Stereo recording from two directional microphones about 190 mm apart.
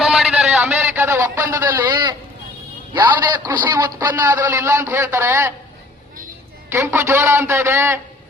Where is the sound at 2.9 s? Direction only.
10° right (ahead or behind).